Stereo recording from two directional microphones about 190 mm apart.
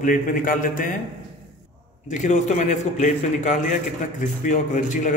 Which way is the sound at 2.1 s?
40° left (ahead or behind).